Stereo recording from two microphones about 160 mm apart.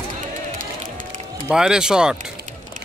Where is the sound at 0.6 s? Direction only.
55° right (ahead or behind).